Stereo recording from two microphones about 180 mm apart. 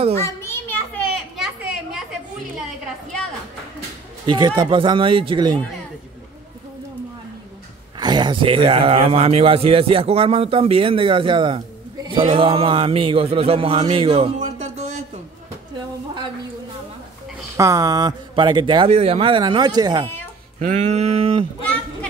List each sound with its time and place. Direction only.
0.4 s children playing: 10° left (ahead or behind)
4.3 s speech: 25° right (ahead or behind)
8.0 s a man's voice: 25° right (ahead or behind)
17.6 s speech: 20° right (ahead or behind)
20.5 s a man's voice: 40° right (ahead or behind)